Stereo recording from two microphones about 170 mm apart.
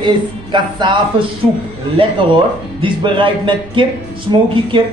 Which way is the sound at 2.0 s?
30° right (ahead or behind).